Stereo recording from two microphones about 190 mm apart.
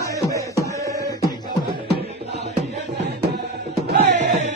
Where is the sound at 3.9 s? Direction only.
50° right (ahead or behind).